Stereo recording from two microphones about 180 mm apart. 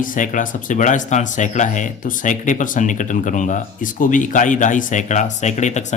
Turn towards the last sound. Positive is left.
turn(degrees=40)  # may be behind; listen again after turning